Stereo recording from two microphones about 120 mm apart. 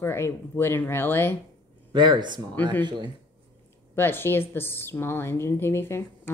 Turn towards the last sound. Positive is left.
turn(degrees=20)  # may be behind; listen again after turning